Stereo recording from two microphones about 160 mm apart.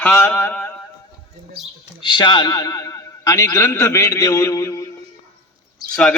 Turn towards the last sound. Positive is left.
turn(degrees=5)  # may be behind; listen again after turning